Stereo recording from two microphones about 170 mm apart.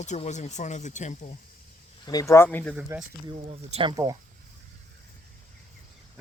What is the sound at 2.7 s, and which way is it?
Speech, 5° right (ahead or behind).